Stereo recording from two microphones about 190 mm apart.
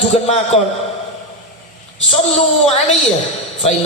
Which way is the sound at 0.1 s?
35° left (ahead or behind).